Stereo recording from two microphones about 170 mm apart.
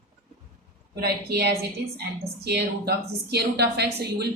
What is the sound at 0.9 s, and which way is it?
A woman's voice, 70° right (ahead or behind).